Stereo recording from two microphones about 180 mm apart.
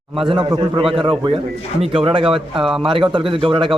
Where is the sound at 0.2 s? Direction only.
30° right (ahead or behind).